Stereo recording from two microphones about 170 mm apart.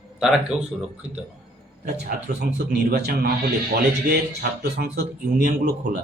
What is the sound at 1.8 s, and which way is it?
Speech, 60° right (ahead or behind).